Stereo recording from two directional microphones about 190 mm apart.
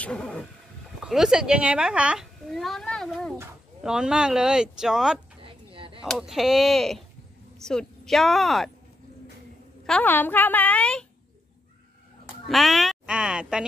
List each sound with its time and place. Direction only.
0.0 s vehicle: 5° left (ahead or behind)
1.0 s a child's voice: 5° right (ahead or behind)
5.4 s a sound: 30° right (ahead or behind)
6.0 s a child's voice: centre (ahead or behind)
9.8 s a woman's voice: 10° left (ahead or behind)
12.4 s speech: centre (ahead or behind)